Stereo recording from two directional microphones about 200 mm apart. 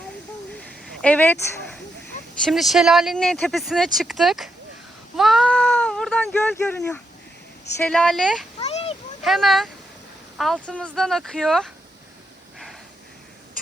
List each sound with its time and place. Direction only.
1.0 s speech: 10° left (ahead or behind)
5.1 s cat: centre (ahead or behind)
7.9 s speech: 5° left (ahead or behind)
8.5 s a sound: 30° left (ahead or behind)
9.2 s speech: centre (ahead or behind)